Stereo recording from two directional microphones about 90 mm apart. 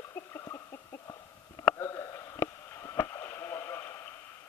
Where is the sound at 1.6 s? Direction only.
30° left (ahead or behind).